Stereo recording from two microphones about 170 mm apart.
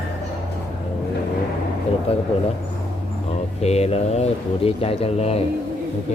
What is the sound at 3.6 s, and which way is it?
Speech, 40° left (ahead or behind).